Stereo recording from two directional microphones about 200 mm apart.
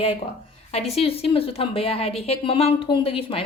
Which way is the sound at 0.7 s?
30° left (ahead or behind).